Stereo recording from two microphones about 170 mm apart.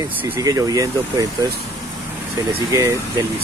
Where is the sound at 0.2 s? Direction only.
15° right (ahead or behind).